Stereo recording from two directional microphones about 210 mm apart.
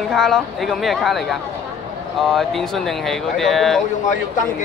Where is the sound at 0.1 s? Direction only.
Centre (ahead or behind).